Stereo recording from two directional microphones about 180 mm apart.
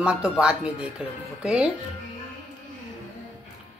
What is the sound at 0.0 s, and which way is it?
Speech, 5° right (ahead or behind).